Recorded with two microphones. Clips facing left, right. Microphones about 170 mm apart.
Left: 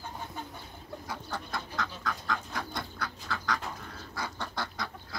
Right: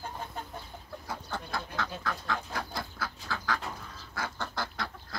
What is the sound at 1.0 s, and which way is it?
Bird, centre (ahead or behind).